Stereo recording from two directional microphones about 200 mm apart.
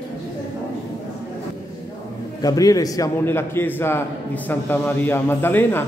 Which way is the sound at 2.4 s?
20° left (ahead or behind).